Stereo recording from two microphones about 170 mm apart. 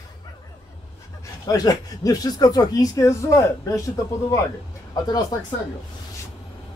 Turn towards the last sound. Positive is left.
turn(degrees=25)  # may be behind; listen again after turning